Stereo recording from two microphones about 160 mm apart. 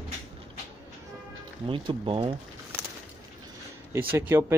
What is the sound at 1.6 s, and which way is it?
Speech, 30° right (ahead or behind).